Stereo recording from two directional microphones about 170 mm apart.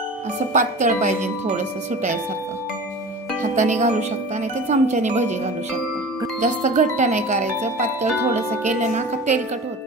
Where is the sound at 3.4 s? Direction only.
45° right (ahead or behind).